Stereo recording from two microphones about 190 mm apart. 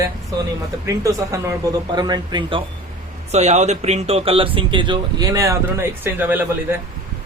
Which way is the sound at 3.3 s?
35° right (ahead or behind).